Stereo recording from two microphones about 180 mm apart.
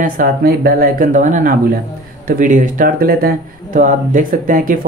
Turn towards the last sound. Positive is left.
turn(degrees=-50)  # may be behind; listen again after turning